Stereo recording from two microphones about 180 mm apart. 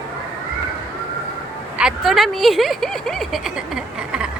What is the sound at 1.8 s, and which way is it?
Speech, 5° right (ahead or behind).